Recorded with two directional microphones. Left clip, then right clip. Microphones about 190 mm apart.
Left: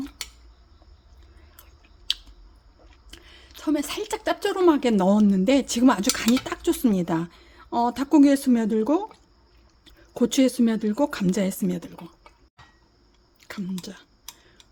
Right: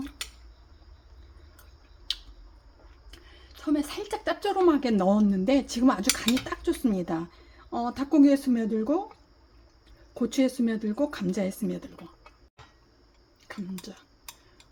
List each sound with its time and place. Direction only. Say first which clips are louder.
2.1 s a sound: left 5 dB; 50° left (ahead or behind)
3.1 s a woman's voice: left 6 dB; 50° left (ahead or behind)
13.4 s speech: left 5 dB; 45° left (ahead or behind)